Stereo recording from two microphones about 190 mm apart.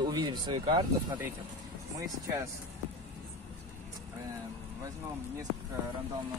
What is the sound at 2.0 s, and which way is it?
Speech, 15° right (ahead or behind).